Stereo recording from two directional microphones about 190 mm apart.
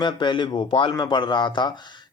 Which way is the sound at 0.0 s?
25° left (ahead or behind).